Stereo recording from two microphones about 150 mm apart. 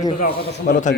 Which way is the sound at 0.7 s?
55° left (ahead or behind).